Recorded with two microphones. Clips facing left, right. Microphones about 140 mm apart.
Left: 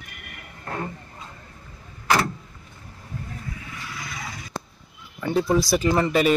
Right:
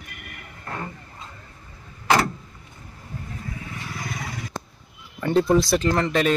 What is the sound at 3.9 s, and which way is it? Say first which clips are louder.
Vehicle: right 4 dB; 45° right (ahead or behind).